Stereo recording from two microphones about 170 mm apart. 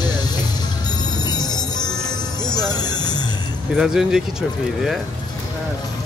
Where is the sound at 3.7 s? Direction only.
Centre (ahead or behind).